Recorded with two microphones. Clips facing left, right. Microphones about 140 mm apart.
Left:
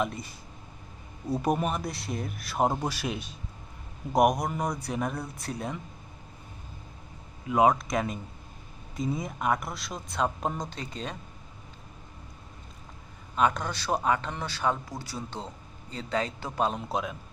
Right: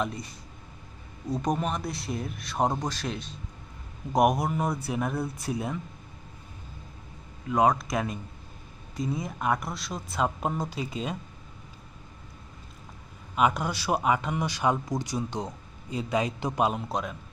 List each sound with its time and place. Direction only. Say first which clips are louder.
0.0 s speech: left 1 dB; centre (ahead or behind)
1.3 s speech: left 1 dB; 10° left (ahead or behind)
4.1 s speech: even; centre (ahead or behind)
7.4 s speech: left 1 dB; 5° left (ahead or behind)
13.3 s speech: right 1 dB; 10° right (ahead or behind)
16.7 s speech: even; centre (ahead or behind)